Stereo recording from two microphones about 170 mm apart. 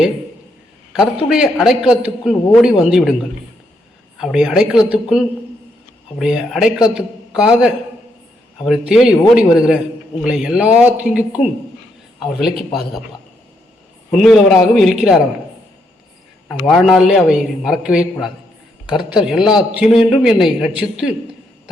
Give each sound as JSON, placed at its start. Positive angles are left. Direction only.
{"t": 1.3, "sound": "a man's voice", "side_deg": -5}
{"t": 4.2, "sound": "a man's voice", "side_deg": -5}
{"t": 14.1, "sound": "a man's voice", "side_deg": 0}
{"t": 16.6, "sound": "a man's voice", "side_deg": 0}